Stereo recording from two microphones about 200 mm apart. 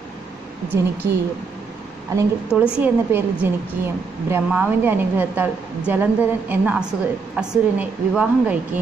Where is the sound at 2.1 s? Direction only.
10° right (ahead or behind).